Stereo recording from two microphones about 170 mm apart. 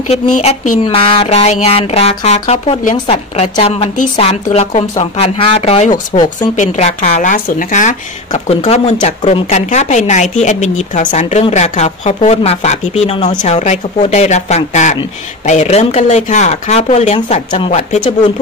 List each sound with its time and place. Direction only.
0.1 s music: 40° left (ahead or behind)
0.8 s music: 35° left (ahead or behind)
6.5 s speech: 45° left (ahead or behind)
17.5 s a woman's voice: 30° left (ahead or behind)